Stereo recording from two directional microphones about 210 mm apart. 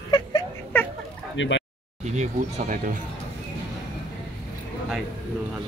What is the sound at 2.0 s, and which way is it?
Speech, 35° right (ahead or behind).